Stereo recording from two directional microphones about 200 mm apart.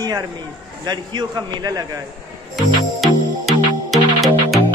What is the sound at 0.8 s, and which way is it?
A man's voice, 20° right (ahead or behind).